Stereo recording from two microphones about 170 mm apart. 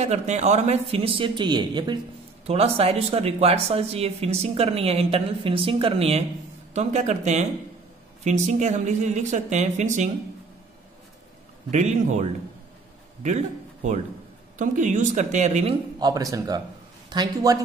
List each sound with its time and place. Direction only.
0.0 s speech: 40° right (ahead or behind)
2.4 s speech: 35° right (ahead or behind)
11.7 s a man's voice: 45° right (ahead or behind)
16.0 s speech: 20° right (ahead or behind)